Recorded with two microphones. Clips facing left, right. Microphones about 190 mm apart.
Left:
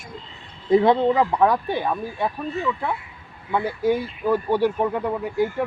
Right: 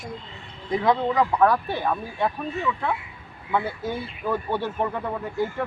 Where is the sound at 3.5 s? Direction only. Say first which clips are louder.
Left 5 dB; 10° left (ahead or behind).